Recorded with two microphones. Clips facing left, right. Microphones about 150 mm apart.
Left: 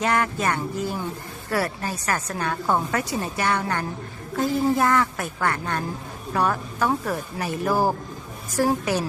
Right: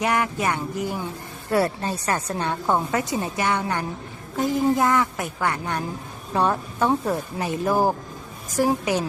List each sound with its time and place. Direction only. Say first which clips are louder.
0.0 s a woman's voice: even; 15° right (ahead or behind)